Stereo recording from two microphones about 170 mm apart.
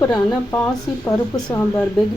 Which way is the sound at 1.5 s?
10° left (ahead or behind).